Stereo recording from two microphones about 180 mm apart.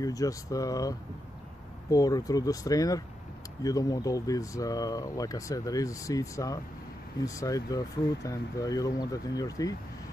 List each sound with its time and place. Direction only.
0.0 s speech: 20° left (ahead or behind)